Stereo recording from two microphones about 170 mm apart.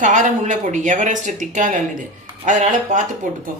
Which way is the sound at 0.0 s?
45° right (ahead or behind).